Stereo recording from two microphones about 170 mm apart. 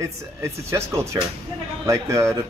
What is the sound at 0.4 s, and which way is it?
Speech, 15° right (ahead or behind).